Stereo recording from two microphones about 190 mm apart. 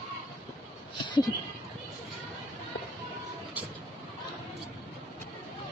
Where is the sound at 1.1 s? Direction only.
20° left (ahead or behind).